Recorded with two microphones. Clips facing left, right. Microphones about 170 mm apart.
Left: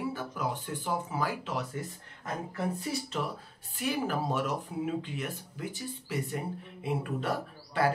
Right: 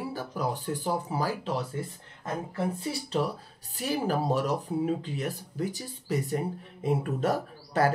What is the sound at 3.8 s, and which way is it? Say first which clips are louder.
Speech: right 3 dB; 35° right (ahead or behind).